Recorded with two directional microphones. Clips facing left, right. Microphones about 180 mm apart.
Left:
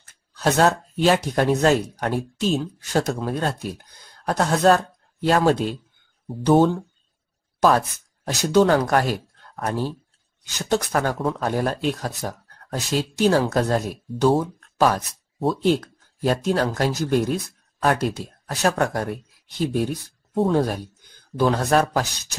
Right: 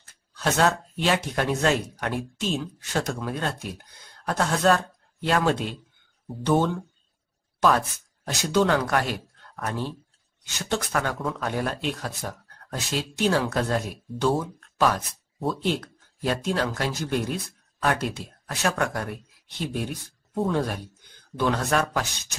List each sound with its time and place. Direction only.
0.4 s speech: 40° left (ahead or behind)
8.3 s speech: 40° left (ahead or behind)